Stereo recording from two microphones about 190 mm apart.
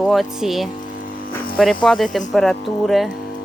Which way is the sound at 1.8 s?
Centre (ahead or behind).